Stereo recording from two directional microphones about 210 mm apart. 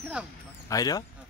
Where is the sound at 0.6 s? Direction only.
15° left (ahead or behind).